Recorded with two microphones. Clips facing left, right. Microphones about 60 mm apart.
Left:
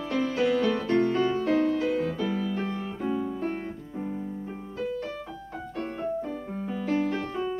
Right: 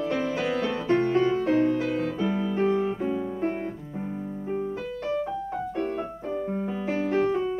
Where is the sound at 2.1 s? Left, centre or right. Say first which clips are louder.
Right 3 dB; right.